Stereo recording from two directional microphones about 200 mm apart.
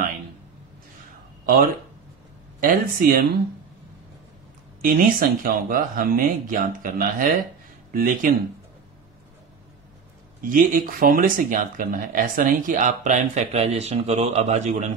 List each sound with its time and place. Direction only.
1.4 s speech: 45° right (ahead or behind)
4.8 s speech: 45° right (ahead or behind)
10.5 s speech: 45° right (ahead or behind)